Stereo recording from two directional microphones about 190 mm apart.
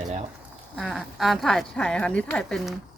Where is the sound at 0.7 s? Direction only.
Centre (ahead or behind).